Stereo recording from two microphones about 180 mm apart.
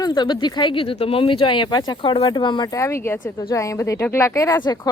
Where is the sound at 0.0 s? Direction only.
25° left (ahead or behind).